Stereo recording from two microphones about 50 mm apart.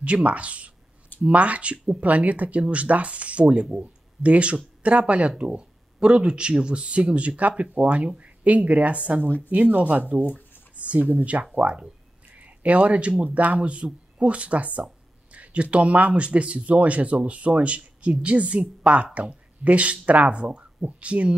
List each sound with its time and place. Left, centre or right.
0.0 s speech: right